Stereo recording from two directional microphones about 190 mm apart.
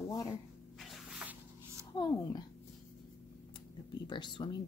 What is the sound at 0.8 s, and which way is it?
Spray, centre (ahead or behind).